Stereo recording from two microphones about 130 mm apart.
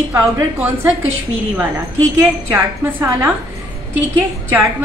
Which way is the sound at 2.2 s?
15° right (ahead or behind).